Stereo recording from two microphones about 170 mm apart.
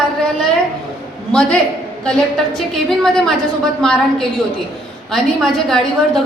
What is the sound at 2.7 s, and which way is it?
A woman's voice, 5° left (ahead or behind).